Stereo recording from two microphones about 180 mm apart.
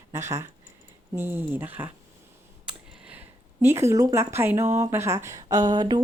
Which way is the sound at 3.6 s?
15° right (ahead or behind).